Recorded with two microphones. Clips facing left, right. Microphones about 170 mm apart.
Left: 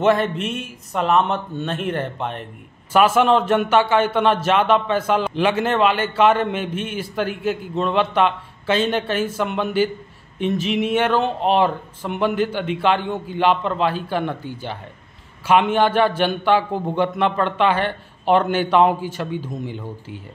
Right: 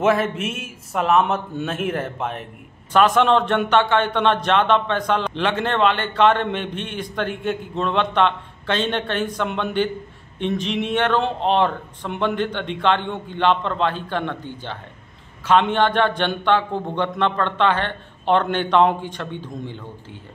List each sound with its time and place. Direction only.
0.0 s a man's voice: 5° right (ahead or behind)